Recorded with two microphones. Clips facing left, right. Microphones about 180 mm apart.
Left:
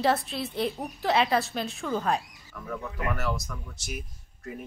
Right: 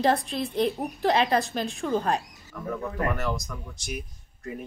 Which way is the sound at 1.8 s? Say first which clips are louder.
Right 4 dB; 25° right (ahead or behind).